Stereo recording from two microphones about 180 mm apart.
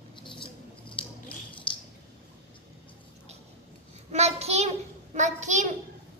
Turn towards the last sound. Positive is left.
turn(degrees=-40)  # may be behind; listen again after turning